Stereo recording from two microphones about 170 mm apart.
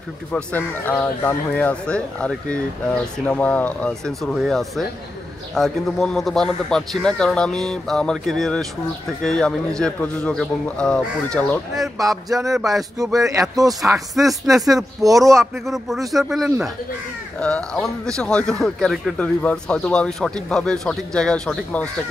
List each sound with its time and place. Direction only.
0.3 s speech: 10° left (ahead or behind)
13.2 s speech: 20° right (ahead or behind)
13.9 s speech: centre (ahead or behind)